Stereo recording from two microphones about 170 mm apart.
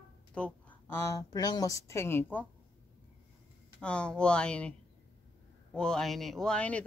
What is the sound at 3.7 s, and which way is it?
Speech, 5° left (ahead or behind).